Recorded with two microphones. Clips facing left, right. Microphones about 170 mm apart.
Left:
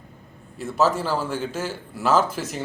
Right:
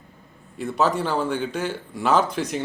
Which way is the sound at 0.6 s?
5° left (ahead or behind).